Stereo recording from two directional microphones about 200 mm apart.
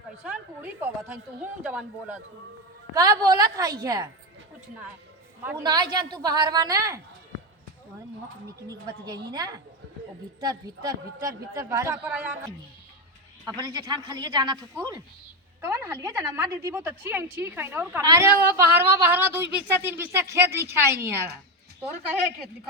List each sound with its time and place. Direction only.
0.3 s a woman's voice: 10° right (ahead or behind)
2.9 s speech: 20° right (ahead or behind)
5.4 s a woman's voice: 10° right (ahead or behind)
5.6 s speech: 20° right (ahead or behind)
8.6 s a woman's voice: 20° right (ahead or behind)
13.6 s a woman's voice: 20° right (ahead or behind)